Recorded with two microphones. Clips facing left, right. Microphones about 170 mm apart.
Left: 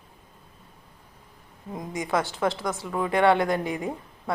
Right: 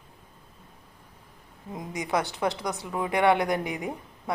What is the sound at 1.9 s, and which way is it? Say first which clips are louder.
A woman's voice: left 1 dB; 20° right (ahead or behind).